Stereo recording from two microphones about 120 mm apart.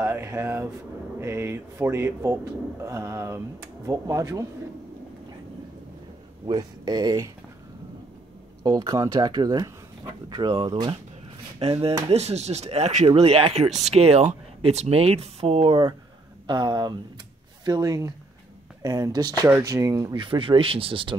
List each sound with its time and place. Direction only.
0.0 s speech: 20° right (ahead or behind)
6.4 s speech: 35° right (ahead or behind)
8.6 s speech: 35° right (ahead or behind)
11.6 s speech: 55° right (ahead or behind)
16.4 s speech: 35° right (ahead or behind)
20.2 s speech: 50° right (ahead or behind)